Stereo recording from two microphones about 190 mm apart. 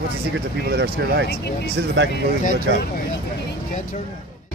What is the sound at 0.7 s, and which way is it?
Speech, 60° right (ahead or behind).